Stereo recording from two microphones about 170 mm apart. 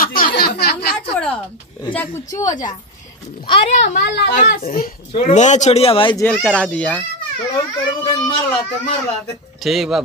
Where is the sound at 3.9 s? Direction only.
80° left.